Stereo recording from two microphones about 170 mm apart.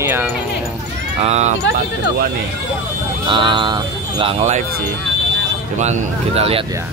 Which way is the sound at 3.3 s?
30° right (ahead or behind).